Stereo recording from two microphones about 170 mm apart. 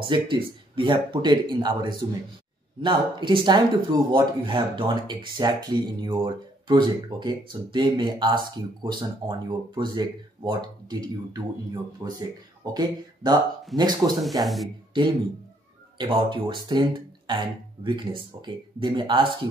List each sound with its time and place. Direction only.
0.0 s speech: 30° right (ahead or behind)
14.4 s speech: centre (ahead or behind)
16.0 s speech: 30° right (ahead or behind)